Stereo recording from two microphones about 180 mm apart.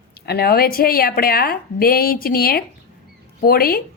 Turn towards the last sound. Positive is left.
turn(degrees=55)  # may be behind; listen again after turning